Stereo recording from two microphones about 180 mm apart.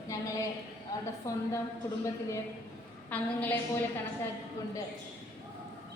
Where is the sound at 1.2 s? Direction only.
15° left (ahead or behind).